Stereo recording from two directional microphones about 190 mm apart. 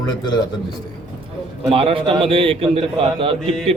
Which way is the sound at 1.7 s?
30° right (ahead or behind).